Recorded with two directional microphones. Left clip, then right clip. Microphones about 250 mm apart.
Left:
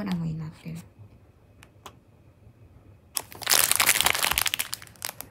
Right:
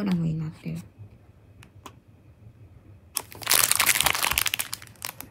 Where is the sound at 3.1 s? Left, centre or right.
Centre.